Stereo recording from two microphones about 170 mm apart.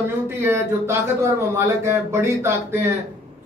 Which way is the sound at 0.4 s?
15° right (ahead or behind).